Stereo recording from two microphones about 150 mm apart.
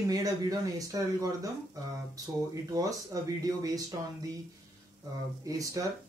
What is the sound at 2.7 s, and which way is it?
Speech, 25° right (ahead or behind).